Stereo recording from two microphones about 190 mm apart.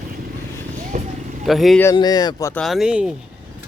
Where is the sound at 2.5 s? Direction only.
Centre (ahead or behind).